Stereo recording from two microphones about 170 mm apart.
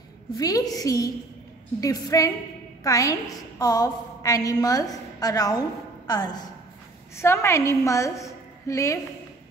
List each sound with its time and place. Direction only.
0.4 s a woman's voice: 20° left (ahead or behind)